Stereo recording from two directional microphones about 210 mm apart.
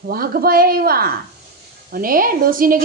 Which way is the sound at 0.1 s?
45° right (ahead or behind).